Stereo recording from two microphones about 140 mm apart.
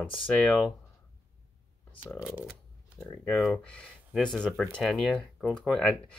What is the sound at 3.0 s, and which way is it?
Speech, 10° left (ahead or behind).